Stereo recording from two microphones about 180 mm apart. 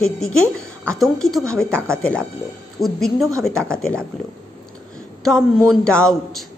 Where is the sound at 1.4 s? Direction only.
15° right (ahead or behind).